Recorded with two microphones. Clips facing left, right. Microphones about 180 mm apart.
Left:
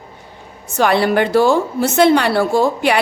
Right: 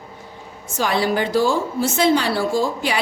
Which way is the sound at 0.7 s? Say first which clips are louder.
Left 6 dB; 65° left (ahead or behind).